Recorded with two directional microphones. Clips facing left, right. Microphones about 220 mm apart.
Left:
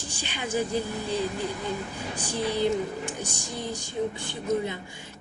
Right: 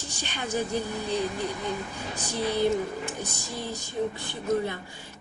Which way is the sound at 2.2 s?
15° left (ahead or behind).